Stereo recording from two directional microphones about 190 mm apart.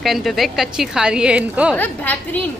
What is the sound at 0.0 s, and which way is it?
A woman's voice, centre (ahead or behind).